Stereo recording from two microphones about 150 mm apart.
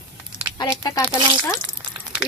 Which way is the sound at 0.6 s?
25° left (ahead or behind).